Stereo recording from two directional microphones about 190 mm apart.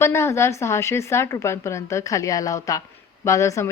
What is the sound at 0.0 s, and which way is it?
Speech, 15° left (ahead or behind).